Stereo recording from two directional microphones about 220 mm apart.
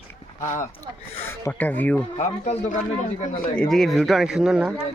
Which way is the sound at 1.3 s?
10° left (ahead or behind).